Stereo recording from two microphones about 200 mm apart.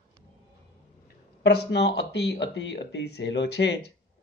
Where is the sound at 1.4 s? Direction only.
55° left (ahead or behind).